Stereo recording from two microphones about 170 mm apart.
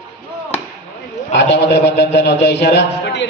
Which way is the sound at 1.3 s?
90° left.